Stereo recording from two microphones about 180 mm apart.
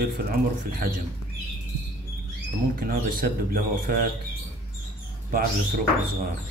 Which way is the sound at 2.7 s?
50° right (ahead or behind).